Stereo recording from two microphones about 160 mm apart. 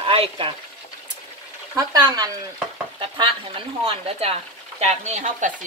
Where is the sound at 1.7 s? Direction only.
25° right (ahead or behind).